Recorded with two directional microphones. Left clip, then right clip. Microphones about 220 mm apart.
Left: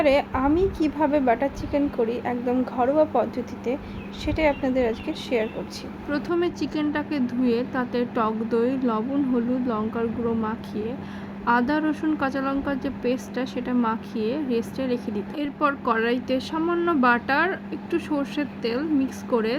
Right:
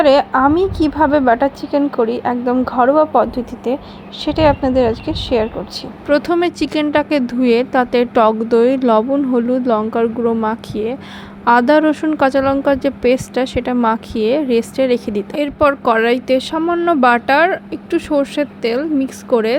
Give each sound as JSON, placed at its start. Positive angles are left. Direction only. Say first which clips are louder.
{"t": 0.0, "sound": "a woman's voice", "louder": "right 10 dB", "side_deg": -20}
{"t": 6.1, "sound": "speech", "louder": "right 11 dB", "side_deg": -30}